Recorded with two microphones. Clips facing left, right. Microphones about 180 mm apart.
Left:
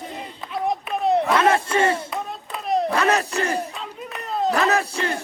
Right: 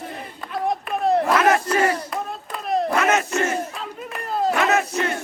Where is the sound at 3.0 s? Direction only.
35° left (ahead or behind).